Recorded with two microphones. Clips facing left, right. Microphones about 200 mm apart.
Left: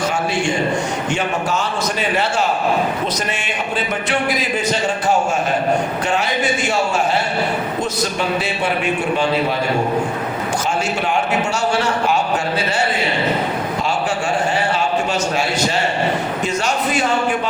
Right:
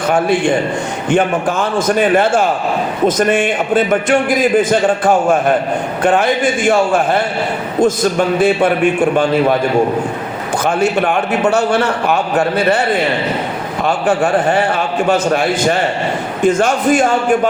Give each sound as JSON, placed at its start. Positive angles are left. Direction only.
{"t": 0.1, "sound": "a man's voice", "side_deg": -55}
{"t": 8.4, "sound": "a man's voice", "side_deg": -50}
{"t": 10.7, "sound": "a man's voice", "side_deg": -60}
{"t": 13.8, "sound": "a man's voice", "side_deg": -55}